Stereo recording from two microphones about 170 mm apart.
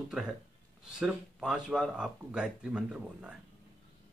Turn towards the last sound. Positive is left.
turn(degrees=-5)  # may be behind; listen again after turning